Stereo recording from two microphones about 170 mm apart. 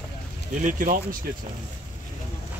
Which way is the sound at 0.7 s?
50° right (ahead or behind).